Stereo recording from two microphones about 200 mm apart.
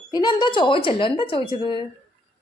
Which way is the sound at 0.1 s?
20° left (ahead or behind).